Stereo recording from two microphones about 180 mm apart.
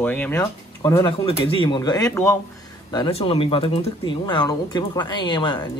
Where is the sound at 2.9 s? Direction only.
30° left (ahead or behind).